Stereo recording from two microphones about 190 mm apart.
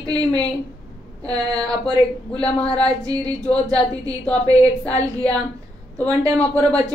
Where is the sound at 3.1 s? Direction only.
20° right (ahead or behind).